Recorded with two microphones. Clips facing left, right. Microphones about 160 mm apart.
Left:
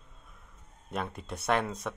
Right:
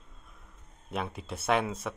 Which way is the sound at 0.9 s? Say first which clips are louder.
Right 1 dB; 5° right (ahead or behind).